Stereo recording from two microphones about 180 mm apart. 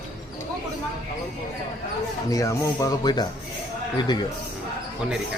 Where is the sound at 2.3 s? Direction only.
20° left (ahead or behind).